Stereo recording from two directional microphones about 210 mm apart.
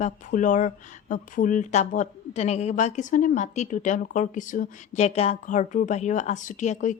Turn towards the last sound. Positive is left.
turn(degrees=35)  # may be behind; listen again after turning